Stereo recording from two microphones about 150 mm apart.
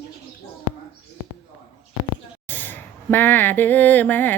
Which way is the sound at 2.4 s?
15° left (ahead or behind).